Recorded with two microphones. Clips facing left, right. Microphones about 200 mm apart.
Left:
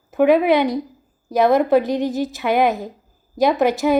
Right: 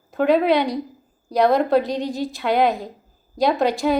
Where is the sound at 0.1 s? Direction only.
15° left (ahead or behind).